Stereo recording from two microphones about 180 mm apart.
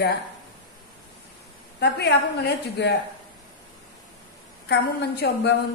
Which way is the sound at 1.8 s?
65° left (ahead or behind).